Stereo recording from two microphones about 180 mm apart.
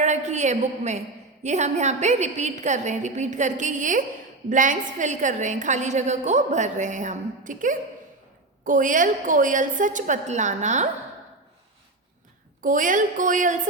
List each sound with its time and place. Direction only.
0.0 s a woman's voice: 40° right (ahead or behind)
12.6 s a woman's voice: 45° right (ahead or behind)